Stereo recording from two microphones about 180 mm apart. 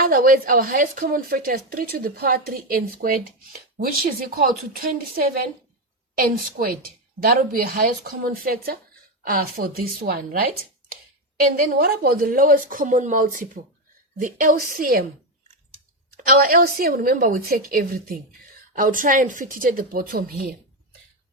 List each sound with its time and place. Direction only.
0.0 s a woman's voice: 50° right (ahead or behind)
11.5 s a woman's voice: 55° right (ahead or behind)
16.2 s a woman's voice: 55° right (ahead or behind)